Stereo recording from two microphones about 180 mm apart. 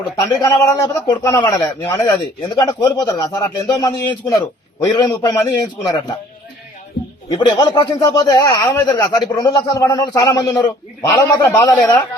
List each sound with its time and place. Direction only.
0.0 s speech: 20° left (ahead or behind)
7.3 s a man's voice: 25° left (ahead or behind)